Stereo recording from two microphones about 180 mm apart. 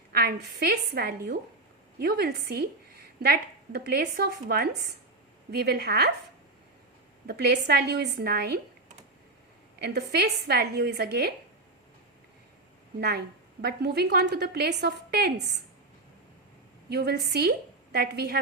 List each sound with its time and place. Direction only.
0.1 s a woman's voice: 60° right (ahead or behind)
7.3 s a woman's voice: 60° right (ahead or behind)
9.8 s a woman's voice: 60° right (ahead or behind)
13.0 s a woman's voice: 65° right (ahead or behind)
16.9 s a woman's voice: 65° right (ahead or behind)